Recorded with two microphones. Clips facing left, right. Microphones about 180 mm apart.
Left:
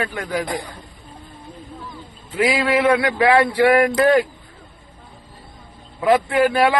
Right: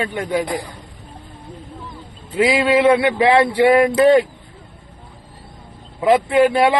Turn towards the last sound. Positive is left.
turn(degrees=-25)  # may be behind; listen again after turning